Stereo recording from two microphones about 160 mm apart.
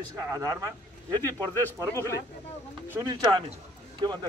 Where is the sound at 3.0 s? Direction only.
25° right (ahead or behind).